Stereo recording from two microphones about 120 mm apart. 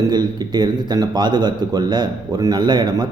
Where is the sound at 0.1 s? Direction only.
35° right (ahead or behind).